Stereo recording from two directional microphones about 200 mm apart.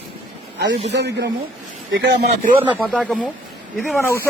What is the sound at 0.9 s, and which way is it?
Speech, 55° right (ahead or behind).